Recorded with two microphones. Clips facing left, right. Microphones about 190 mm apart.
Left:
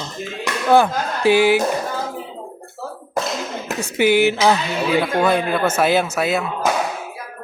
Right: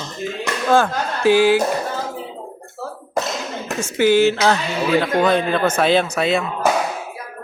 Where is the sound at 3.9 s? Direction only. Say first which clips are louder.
Right 1 dB; 15° left (ahead or behind).